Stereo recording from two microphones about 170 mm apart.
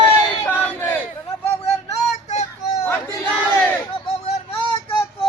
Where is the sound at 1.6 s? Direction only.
40° left (ahead or behind).